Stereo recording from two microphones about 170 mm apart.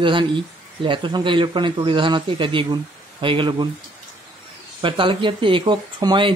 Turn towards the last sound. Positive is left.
turn(degrees=-25)  # may be behind; listen again after turning